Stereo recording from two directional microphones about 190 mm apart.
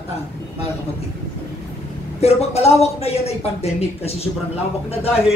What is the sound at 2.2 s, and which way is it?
Speech, 35° left (ahead or behind).